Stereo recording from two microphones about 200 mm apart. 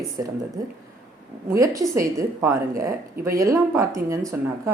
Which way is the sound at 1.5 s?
15° right (ahead or behind).